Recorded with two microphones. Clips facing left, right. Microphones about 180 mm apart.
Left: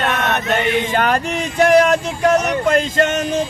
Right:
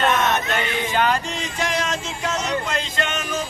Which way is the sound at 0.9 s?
55° left (ahead or behind).